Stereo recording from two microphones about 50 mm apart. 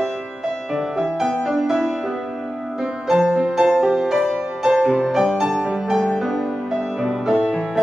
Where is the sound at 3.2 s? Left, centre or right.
Centre.